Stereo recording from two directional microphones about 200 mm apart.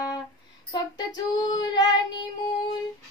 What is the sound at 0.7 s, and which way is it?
Child singing, 20° left (ahead or behind).